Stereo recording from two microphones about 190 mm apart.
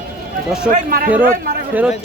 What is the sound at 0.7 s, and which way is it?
Speech, 50° right (ahead or behind).